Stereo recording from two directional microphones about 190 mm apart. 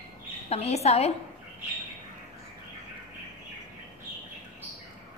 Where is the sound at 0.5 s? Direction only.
35° left (ahead or behind).